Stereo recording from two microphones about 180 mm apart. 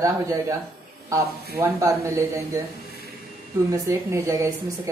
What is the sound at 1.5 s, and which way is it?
Speech, 15° right (ahead or behind).